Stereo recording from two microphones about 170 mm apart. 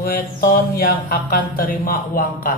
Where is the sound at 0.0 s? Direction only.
60° left (ahead or behind).